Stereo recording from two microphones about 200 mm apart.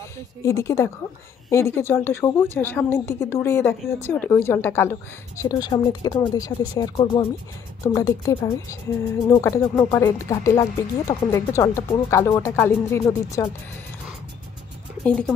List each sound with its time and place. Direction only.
0.4 s speech: 15° left (ahead or behind)